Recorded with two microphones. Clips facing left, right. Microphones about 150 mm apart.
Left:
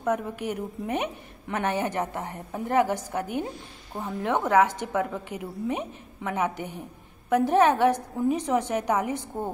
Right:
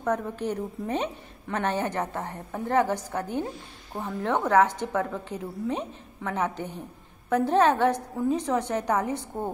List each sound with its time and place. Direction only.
0.0 s a woman's voice: 15° left (ahead or behind)